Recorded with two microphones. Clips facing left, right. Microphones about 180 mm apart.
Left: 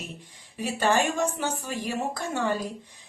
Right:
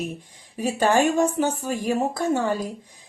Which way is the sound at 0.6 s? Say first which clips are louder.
Right 5 dB; 45° right (ahead or behind).